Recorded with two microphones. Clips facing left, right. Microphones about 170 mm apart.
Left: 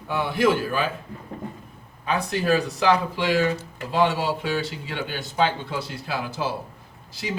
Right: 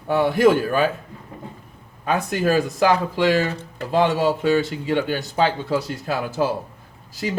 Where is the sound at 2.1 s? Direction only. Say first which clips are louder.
Right 2 dB; 45° right (ahead or behind).